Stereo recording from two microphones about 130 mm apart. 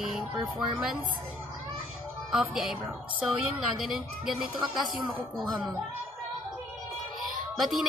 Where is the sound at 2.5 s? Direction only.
Centre (ahead or behind).